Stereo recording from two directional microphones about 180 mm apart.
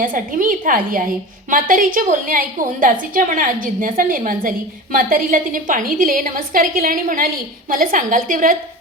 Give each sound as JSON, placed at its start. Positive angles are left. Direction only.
{"t": 0.0, "sound": "a woman's voice", "side_deg": -50}